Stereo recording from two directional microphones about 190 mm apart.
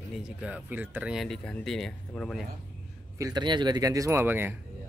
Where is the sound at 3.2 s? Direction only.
20° right (ahead or behind).